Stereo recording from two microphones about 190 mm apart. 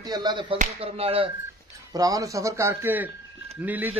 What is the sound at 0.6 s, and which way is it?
Speech, 30° right (ahead or behind).